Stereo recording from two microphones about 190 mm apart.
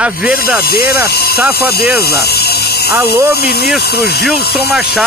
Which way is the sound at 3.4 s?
55° left (ahead or behind).